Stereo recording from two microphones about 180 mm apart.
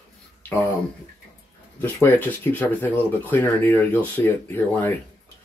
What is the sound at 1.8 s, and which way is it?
Speech, 10° left (ahead or behind).